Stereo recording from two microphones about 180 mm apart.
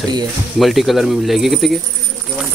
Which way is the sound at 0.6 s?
Centre (ahead or behind).